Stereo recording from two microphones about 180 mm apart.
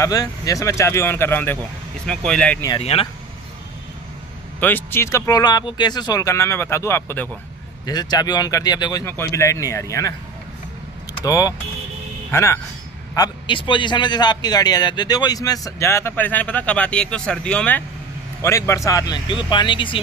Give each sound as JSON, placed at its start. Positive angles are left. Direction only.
{"t": 0.0, "sound": "speech", "side_deg": 20}
{"t": 2.8, "sound": "speech", "side_deg": 35}
{"t": 4.6, "sound": "speech", "side_deg": 10}
{"t": 7.8, "sound": "speech", "side_deg": 20}
{"t": 11.2, "sound": "a man's voice", "side_deg": 20}